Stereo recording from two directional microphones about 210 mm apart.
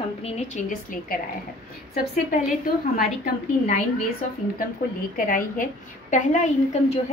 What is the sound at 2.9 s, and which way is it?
Speech, 40° left (ahead or behind).